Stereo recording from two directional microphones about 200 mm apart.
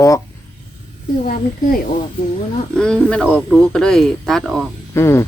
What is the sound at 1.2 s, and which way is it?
Speech, 45° left (ahead or behind).